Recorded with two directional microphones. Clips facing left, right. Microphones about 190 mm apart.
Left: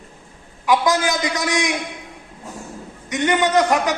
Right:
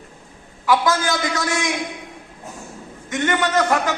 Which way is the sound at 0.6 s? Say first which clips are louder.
Left 1 dB; 15° left (ahead or behind).